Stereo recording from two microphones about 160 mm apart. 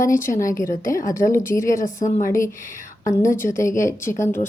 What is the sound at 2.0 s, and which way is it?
Speech, 50° left (ahead or behind).